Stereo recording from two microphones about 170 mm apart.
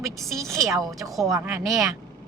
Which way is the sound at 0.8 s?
20° right (ahead or behind).